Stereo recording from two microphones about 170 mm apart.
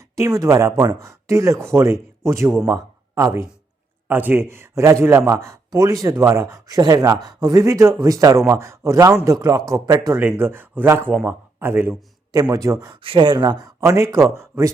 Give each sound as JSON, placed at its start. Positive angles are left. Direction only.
{"t": 0.0, "sound": "speech", "side_deg": -20}
{"t": 13.0, "sound": "speech", "side_deg": -30}